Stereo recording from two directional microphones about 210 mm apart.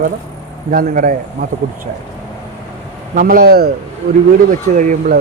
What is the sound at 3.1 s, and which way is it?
Speech, 45° right (ahead or behind).